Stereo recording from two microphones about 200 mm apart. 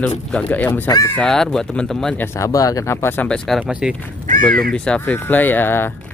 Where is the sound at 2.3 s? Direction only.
15° left (ahead or behind); by 3.9 s 5° right (ahead or behind).